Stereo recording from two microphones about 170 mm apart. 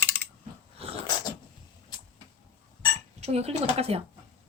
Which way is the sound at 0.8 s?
35° right (ahead or behind).